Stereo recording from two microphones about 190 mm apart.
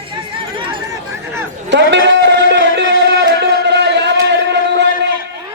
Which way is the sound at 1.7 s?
65° right (ahead or behind).